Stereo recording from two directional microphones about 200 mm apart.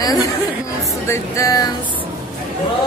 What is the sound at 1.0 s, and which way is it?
Speech, 15° left (ahead or behind).